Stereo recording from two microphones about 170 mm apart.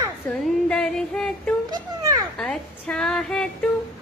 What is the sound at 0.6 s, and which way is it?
Speech, 5° left (ahead or behind).